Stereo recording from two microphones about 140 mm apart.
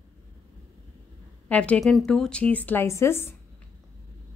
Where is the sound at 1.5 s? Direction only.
10° left (ahead or behind).